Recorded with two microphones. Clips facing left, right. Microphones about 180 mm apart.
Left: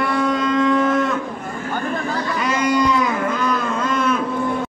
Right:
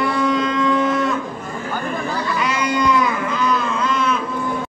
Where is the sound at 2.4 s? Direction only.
45° left (ahead or behind).